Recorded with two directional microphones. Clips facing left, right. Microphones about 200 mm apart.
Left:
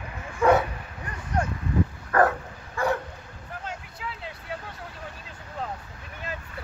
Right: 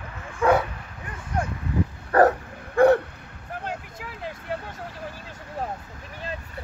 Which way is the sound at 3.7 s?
50° right (ahead or behind).